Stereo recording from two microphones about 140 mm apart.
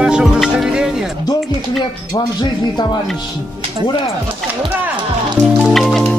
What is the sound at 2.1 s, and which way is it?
Speech, 30° left (ahead or behind).